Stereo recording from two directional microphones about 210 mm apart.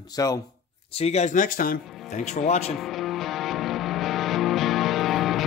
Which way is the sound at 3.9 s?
Centre (ahead or behind).